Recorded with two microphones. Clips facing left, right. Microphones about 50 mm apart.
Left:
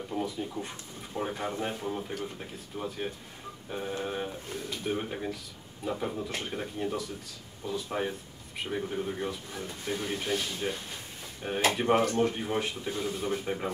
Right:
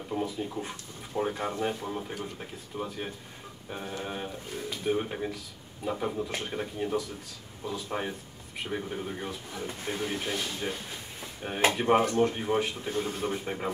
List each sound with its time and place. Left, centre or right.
0.1 s speech: centre
9.7 s speech: centre
10.0 s speech: centre
12.9 s speech: right
13.3 s speech: centre